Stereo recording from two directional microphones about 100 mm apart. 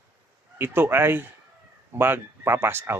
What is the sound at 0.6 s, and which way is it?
Speech, 20° right (ahead or behind).